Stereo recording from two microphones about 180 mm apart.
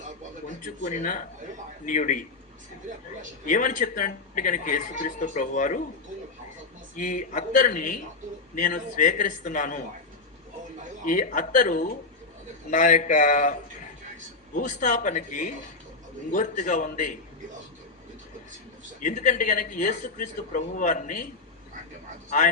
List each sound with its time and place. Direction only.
0.4 s speech: 45° left (ahead or behind)
3.4 s speech: 45° left (ahead or behind)
6.9 s speech: 45° left (ahead or behind)
11.0 s speech: 50° left (ahead or behind)
18.9 s speech: 45° left (ahead or behind)